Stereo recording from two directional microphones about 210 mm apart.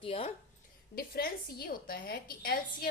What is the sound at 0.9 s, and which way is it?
A woman's voice, 45° left (ahead or behind).